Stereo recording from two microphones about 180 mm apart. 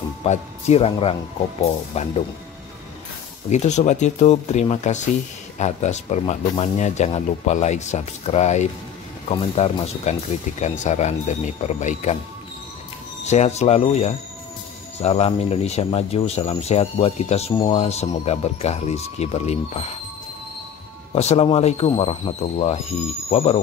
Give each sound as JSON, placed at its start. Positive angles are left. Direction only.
{"t": 0.2, "sound": "speech", "side_deg": 35}
{"t": 3.4, "sound": "speech", "side_deg": 40}
{"t": 13.2, "sound": "speech", "side_deg": 40}
{"t": 21.1, "sound": "speech", "side_deg": 35}